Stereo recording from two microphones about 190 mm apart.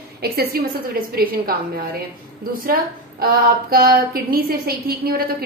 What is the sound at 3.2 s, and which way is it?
A woman's voice, 50° right (ahead or behind).